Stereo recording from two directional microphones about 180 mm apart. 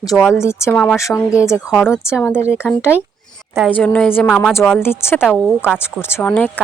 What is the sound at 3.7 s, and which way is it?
A woman's voice, 5° left (ahead or behind).